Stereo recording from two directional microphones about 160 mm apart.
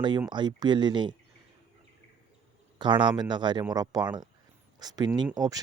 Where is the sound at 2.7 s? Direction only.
30° right (ahead or behind).